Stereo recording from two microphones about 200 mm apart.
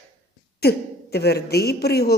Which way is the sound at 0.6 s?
50° left (ahead or behind).